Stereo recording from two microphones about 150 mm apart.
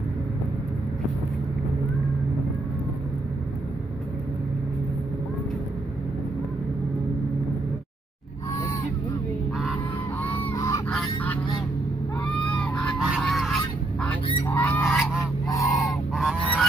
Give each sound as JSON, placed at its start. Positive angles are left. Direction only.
{"t": 10.5, "sound": "honk", "side_deg": 20}
{"t": 12.4, "sound": "goose", "side_deg": 10}
{"t": 14.4, "sound": "goose", "side_deg": 10}
{"t": 14.8, "sound": "goose", "side_deg": 0}
{"t": 15.5, "sound": "goose", "side_deg": 20}
{"t": 16.2, "sound": "goose", "side_deg": -5}